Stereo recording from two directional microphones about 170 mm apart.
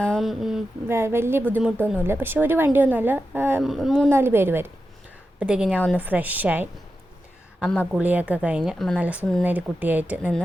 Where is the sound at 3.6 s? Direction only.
Centre (ahead or behind).